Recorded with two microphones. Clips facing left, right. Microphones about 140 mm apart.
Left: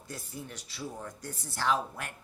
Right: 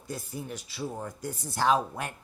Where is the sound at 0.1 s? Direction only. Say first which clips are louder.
Right 6 dB; 15° right (ahead or behind).